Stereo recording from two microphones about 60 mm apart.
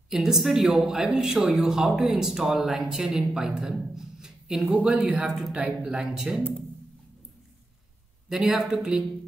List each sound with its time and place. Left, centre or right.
0.1 s speech: centre
6.1 s speech: centre
8.3 s speech: centre